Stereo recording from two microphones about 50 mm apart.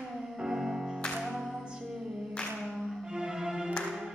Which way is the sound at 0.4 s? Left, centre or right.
Centre.